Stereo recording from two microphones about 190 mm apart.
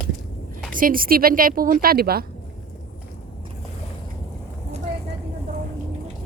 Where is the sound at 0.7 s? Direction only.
45° right (ahead or behind).